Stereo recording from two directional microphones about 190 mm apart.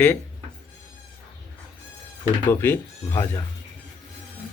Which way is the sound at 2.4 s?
10° left (ahead or behind).